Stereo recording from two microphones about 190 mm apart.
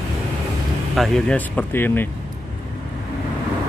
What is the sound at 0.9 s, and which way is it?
Speech, centre (ahead or behind).